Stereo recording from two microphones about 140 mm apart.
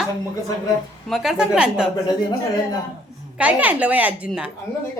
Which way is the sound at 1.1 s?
5° right (ahead or behind).